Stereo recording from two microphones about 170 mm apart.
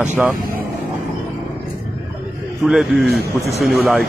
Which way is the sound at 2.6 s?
Centre (ahead or behind).